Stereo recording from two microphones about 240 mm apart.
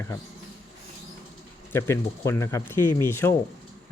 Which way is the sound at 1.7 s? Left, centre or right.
Centre.